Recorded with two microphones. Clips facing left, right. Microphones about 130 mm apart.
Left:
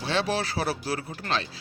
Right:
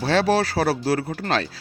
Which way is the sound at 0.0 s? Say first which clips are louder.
Right 8 dB; 40° right (ahead or behind).